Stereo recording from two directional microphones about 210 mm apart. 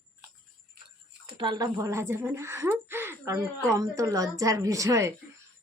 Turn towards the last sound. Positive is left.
turn(degrees=-15)  # may be behind; listen again after turning